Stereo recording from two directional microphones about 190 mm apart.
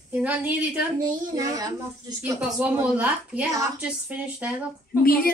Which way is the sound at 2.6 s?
10° right (ahead or behind).